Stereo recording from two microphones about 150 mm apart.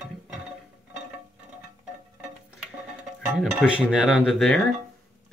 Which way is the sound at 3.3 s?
5° right (ahead or behind).